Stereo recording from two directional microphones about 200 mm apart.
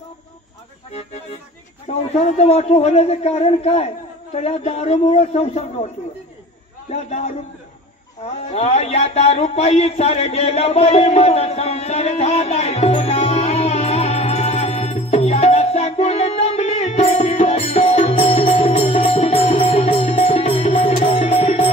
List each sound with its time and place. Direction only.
2.1 s a man's voice: 30° left (ahead or behind)
6.9 s a man's voice: 30° left (ahead or behind)
8.5 s music: 30° left (ahead or behind)